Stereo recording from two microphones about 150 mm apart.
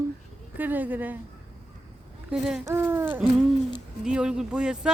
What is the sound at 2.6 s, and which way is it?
Speech, 15° right (ahead or behind).